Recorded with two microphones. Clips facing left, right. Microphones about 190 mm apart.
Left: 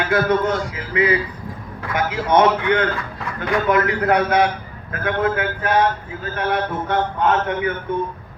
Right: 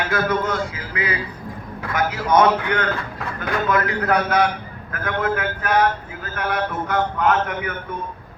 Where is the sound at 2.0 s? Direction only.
25° left (ahead or behind).